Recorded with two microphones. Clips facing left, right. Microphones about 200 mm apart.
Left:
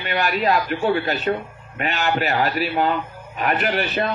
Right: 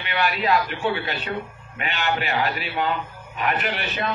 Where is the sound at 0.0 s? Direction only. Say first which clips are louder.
Left 3 dB; 40° left (ahead or behind).